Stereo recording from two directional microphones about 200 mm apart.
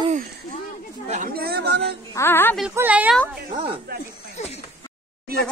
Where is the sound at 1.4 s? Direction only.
55° right (ahead or behind).